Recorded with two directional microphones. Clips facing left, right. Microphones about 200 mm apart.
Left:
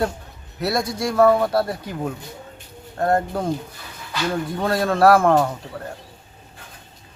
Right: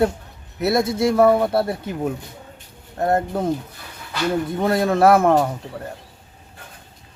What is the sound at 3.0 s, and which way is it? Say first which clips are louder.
Speech: even; 20° right (ahead or behind).